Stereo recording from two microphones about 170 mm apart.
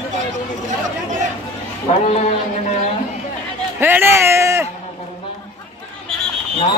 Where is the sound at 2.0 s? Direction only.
40° left (ahead or behind).